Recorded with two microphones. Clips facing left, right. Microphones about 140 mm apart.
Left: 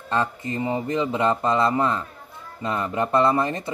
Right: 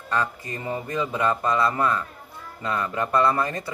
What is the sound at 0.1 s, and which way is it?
Speech, 25° left (ahead or behind).